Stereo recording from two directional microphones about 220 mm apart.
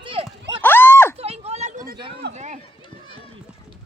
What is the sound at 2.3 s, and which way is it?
Run, 30° right (ahead or behind).